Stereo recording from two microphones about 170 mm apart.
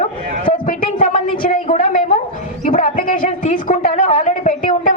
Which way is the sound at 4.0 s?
40° left (ahead or behind).